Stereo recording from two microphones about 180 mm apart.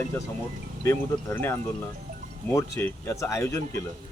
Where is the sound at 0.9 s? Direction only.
15° left (ahead or behind).